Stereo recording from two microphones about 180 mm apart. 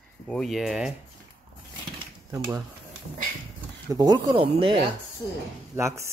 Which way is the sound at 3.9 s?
20° right (ahead or behind).